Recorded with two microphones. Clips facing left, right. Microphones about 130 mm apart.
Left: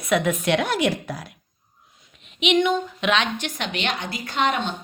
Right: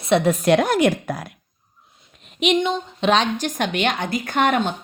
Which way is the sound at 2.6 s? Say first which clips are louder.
Left 1 dB; 30° right (ahead or behind).